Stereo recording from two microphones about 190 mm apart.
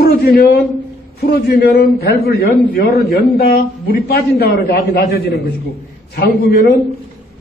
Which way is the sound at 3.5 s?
50° left (ahead or behind).